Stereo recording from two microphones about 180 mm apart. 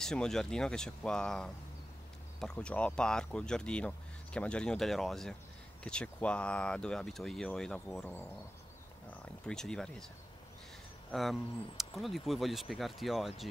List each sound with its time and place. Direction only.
0.0 s speech: 5° left (ahead or behind)
9.5 s speech: 5° left (ahead or behind)
11.1 s speech: centre (ahead or behind)